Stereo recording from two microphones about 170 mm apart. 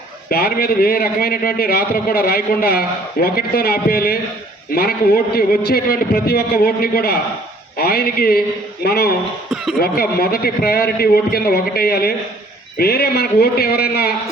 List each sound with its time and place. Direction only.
0.3 s a man's voice: 60° left (ahead or behind)